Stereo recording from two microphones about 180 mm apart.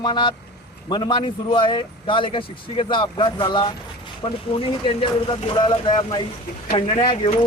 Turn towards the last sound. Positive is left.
turn(degrees=30)  # may be behind; listen again after turning